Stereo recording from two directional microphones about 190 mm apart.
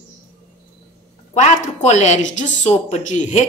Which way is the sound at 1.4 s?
40° left (ahead or behind).